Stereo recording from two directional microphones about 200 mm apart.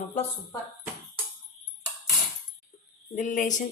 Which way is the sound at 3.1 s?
40° left (ahead or behind).